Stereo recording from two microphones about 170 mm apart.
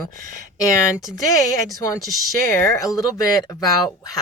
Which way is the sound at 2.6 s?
20° left (ahead or behind).